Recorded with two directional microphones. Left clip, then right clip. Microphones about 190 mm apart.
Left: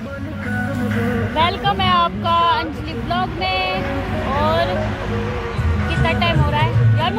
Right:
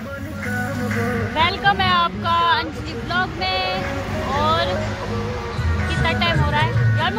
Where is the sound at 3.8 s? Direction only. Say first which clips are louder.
Left 2 dB; 60° right (ahead or behind).